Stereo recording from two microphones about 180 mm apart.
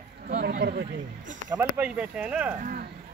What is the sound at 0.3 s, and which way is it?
Chatter, 60° right (ahead or behind).